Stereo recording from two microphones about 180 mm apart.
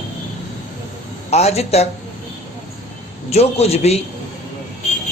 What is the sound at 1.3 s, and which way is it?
Speech, 35° left (ahead or behind).